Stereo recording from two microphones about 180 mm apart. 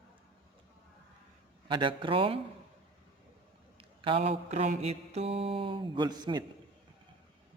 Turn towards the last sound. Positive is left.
turn(degrees=-25)  # may be behind; listen again after turning